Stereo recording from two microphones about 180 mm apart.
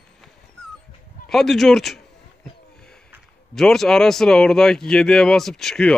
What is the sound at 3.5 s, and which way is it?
A man's voice, centre (ahead or behind).